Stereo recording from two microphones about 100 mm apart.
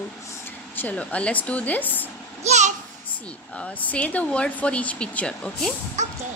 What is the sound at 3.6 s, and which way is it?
Speech, 15° left (ahead or behind).